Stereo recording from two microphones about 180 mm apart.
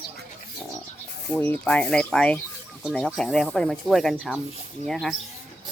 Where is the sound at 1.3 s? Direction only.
10° left (ahead or behind).